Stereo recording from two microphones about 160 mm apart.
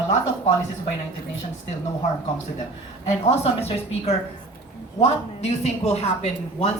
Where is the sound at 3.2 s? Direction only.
40° left (ahead or behind).